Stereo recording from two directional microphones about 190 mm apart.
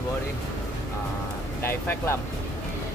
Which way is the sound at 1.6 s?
10° left (ahead or behind).